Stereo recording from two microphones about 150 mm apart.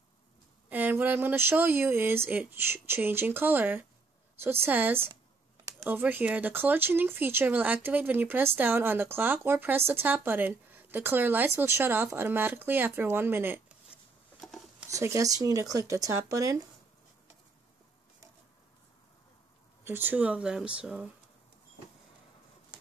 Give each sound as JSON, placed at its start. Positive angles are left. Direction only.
{"t": 0.7, "sound": "speech", "side_deg": -10}
{"t": 14.4, "sound": "a sound", "side_deg": 0}
{"t": 14.9, "sound": "speech", "side_deg": -20}
{"t": 19.8, "sound": "speech", "side_deg": -15}